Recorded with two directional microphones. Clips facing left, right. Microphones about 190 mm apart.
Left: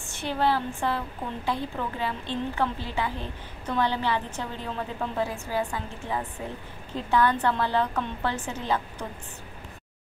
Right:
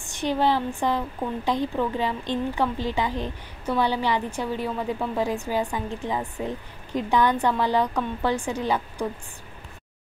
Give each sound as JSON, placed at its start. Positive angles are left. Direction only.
{"t": 0.0, "sound": "a woman's voice", "side_deg": -15}